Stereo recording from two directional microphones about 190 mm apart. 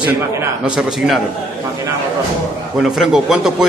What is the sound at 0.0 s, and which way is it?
A man's voice, 5° right (ahead or behind).